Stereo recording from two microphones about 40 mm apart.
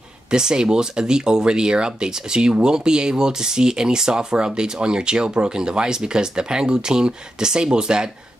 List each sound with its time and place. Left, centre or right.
0.3 s speech: centre